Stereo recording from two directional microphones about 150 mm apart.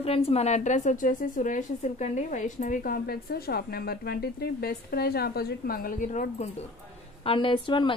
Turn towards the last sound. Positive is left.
turn(degrees=35)  # may be behind; listen again after turning